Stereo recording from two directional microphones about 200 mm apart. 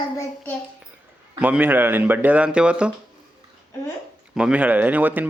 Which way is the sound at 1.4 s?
5° right (ahead or behind).